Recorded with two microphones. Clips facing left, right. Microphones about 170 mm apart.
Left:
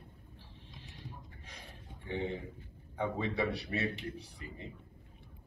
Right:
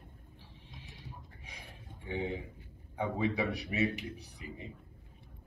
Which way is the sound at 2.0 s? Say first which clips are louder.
Even; 10° right (ahead or behind).